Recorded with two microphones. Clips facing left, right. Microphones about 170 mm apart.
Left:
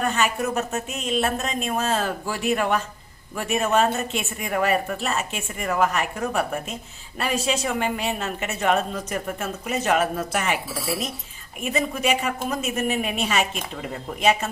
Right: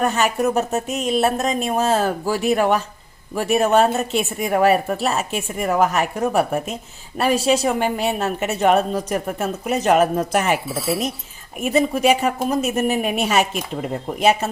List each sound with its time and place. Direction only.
0.0 s a woman's voice: 40° right (ahead or behind)
11.6 s a woman's voice: 40° right (ahead or behind)